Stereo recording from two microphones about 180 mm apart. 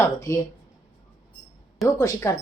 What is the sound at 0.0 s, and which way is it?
Speech, 15° left (ahead or behind).